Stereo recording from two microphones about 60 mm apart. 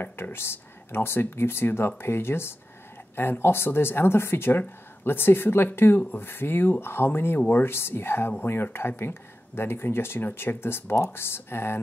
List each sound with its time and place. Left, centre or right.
0.0 s speech: left